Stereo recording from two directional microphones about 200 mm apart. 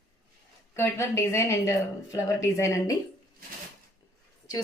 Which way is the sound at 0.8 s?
15° left (ahead or behind).